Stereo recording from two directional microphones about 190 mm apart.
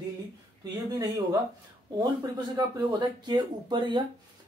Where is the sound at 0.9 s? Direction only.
20° right (ahead or behind).